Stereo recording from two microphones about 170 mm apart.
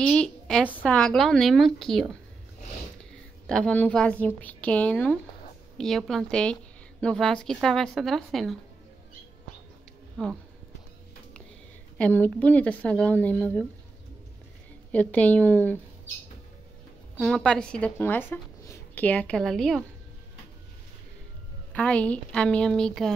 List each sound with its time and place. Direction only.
0.0 s a woman's voice: 5° left (ahead or behind)
3.0 s a sound: 5° left (ahead or behind)
4.4 s a woman's voice: 10° left (ahead or behind)
10.2 s speech: 5° left (ahead or behind)
12.0 s speech: 10° left (ahead or behind)
14.9 s speech: 10° left (ahead or behind)
17.2 s a woman's voice: 5° left (ahead or behind)
21.7 s a woman's voice: 5° left (ahead or behind)